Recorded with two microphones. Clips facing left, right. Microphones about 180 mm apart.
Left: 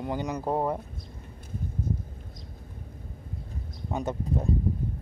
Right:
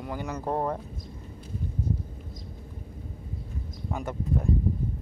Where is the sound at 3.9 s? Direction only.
20° left (ahead or behind).